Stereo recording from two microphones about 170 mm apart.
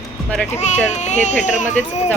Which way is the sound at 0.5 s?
40° left (ahead or behind).